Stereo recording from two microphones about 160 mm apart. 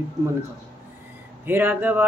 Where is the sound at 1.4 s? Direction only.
10° right (ahead or behind).